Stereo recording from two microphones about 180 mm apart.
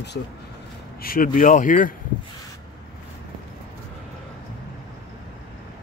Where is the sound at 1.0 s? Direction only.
50° left (ahead or behind).